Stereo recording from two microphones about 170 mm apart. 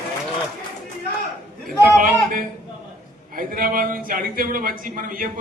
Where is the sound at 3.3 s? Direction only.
55° right (ahead or behind).